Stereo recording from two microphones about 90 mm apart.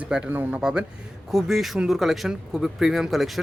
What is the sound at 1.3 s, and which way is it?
Speech, 5° right (ahead or behind).